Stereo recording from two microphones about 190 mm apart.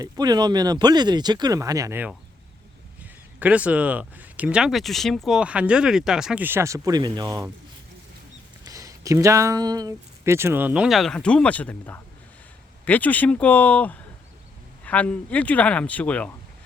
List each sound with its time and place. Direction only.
0.0 s speech: 20° right (ahead or behind)
8.6 s speech: 20° right (ahead or behind); by 16.3 s 5° left (ahead or behind)